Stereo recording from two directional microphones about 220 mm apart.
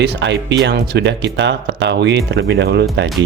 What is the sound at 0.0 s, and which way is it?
Speech, 50° right (ahead or behind).